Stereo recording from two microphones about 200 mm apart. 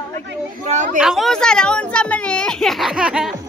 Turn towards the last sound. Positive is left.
turn(degrees=-5)  # may be behind; listen again after turning